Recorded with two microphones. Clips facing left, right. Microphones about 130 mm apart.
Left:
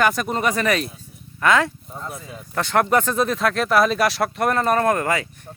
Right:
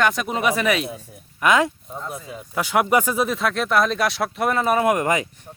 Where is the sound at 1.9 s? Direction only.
5° right (ahead or behind).